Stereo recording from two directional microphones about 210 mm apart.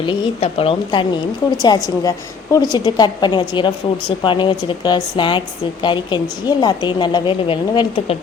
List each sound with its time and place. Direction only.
0.0 s a woman's voice: 25° left (ahead or behind)